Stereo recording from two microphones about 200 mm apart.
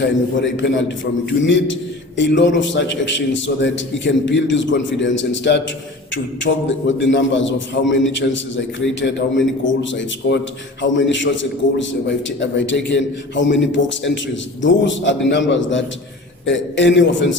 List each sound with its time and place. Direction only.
0.0 s a man's voice: 65° left (ahead or behind)